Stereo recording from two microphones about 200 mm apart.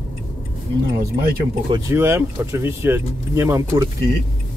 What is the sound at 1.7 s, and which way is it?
Speech, 15° right (ahead or behind).